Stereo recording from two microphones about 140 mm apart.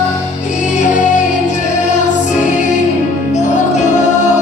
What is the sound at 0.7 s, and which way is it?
Music, 60° left (ahead or behind).